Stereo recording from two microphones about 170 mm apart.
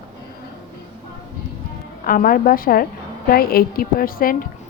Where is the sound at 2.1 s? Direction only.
55° left (ahead or behind).